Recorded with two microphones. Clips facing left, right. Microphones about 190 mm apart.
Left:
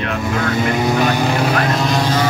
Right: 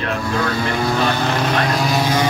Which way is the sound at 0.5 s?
20° left (ahead or behind).